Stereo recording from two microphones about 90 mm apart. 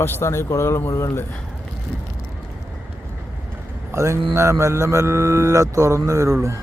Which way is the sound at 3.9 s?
35° right (ahead or behind).